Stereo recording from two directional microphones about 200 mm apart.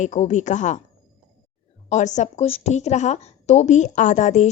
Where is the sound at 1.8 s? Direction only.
35° left (ahead or behind).